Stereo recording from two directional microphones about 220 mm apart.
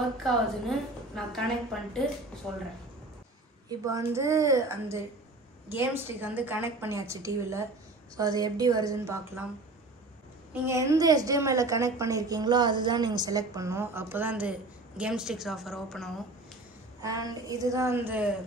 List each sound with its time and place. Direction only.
0.2 s a woman's voice: centre (ahead or behind)
3.6 s a woman's voice: 15° right (ahead or behind)
10.5 s a woman's voice: 10° right (ahead or behind)
17.0 s a woman's voice: 15° right (ahead or behind)